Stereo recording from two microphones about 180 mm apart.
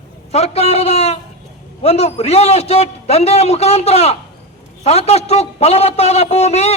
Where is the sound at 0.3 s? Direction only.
35° left (ahead or behind).